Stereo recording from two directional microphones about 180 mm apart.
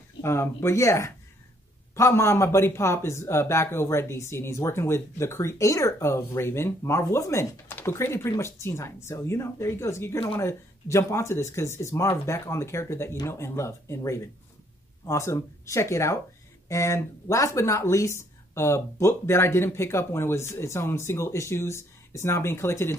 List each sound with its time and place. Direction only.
0.2 s speech: 15° left (ahead or behind)